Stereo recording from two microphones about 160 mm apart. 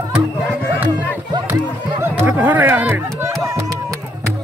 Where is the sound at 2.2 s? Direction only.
10° right (ahead or behind).